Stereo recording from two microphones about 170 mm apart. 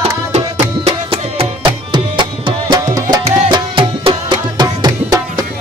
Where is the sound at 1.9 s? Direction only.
25° right (ahead or behind).